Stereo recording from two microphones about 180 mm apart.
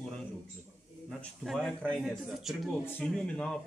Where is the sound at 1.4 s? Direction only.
Centre (ahead or behind).